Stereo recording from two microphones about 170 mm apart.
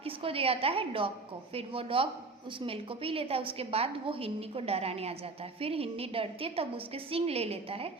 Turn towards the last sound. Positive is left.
turn(degrees=-35)  # may be behind; listen again after turning